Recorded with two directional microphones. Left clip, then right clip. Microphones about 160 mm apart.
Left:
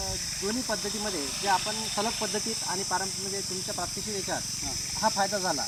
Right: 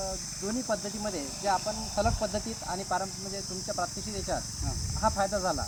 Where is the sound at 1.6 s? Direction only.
40° right (ahead or behind).